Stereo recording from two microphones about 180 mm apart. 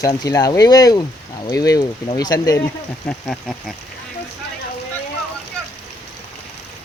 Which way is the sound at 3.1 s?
5° left (ahead or behind).